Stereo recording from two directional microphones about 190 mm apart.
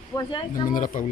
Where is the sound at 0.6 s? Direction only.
45° left (ahead or behind).